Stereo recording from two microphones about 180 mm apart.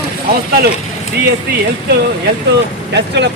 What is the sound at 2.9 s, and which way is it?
Speech, 75° right (ahead or behind).